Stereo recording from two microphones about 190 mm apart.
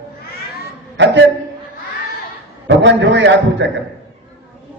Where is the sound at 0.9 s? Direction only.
70° right (ahead or behind).